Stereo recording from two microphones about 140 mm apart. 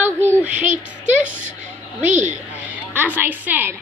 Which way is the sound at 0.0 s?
15° right (ahead or behind).